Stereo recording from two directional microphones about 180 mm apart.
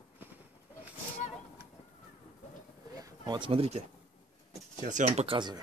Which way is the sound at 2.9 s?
25° right (ahead or behind).